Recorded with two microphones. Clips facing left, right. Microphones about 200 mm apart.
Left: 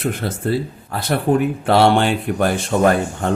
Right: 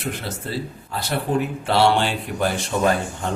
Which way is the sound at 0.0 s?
50° left (ahead or behind).